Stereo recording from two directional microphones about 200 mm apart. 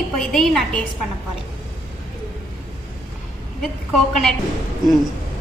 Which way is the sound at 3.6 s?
Centre (ahead or behind).